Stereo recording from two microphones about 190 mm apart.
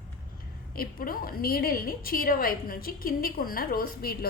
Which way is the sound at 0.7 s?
50° left (ahead or behind).